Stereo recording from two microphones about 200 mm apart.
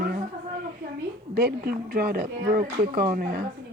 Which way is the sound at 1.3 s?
50° right (ahead or behind).